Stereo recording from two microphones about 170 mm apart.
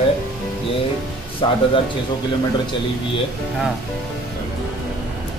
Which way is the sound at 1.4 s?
30° left (ahead or behind).